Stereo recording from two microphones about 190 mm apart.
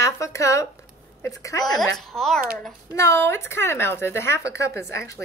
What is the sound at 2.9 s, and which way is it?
A woman's voice, 15° left (ahead or behind).